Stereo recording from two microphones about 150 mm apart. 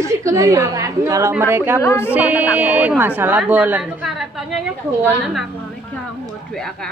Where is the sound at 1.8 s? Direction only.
15° left (ahead or behind).